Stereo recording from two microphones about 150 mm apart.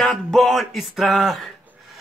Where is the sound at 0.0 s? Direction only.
5° left (ahead or behind).